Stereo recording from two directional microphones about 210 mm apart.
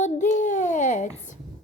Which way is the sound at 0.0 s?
35° left (ahead or behind).